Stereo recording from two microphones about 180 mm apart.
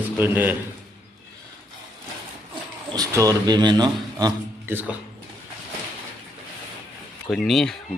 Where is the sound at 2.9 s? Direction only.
20° right (ahead or behind).